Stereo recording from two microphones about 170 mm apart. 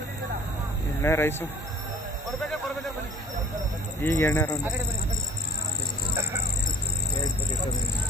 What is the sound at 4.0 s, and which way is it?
Speech, 15° left (ahead or behind).